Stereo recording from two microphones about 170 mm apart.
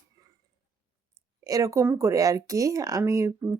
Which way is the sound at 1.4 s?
20° right (ahead or behind).